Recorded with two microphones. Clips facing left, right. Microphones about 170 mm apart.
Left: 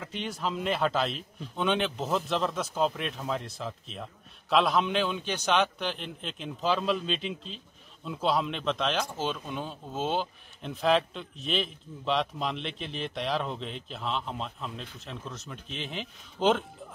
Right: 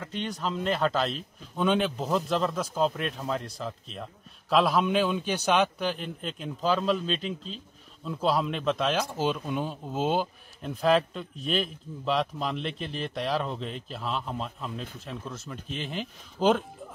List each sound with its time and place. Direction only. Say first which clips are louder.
0.0 s a man's voice: right 1 dB; 5° left (ahead or behind)